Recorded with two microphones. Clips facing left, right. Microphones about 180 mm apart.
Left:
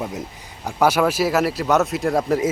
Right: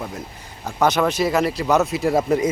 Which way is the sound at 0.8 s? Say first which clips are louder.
Left 1 dB; 10° left (ahead or behind).